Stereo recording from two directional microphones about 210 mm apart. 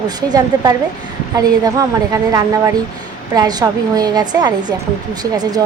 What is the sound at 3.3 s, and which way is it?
A woman's voice, 20° right (ahead or behind).